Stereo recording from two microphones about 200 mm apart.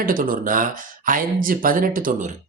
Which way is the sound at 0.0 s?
45° right (ahead or behind).